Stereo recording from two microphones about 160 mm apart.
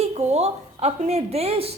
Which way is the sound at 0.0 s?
40° right (ahead or behind).